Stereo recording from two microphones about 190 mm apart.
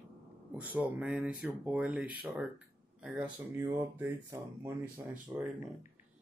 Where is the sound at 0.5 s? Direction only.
10° right (ahead or behind).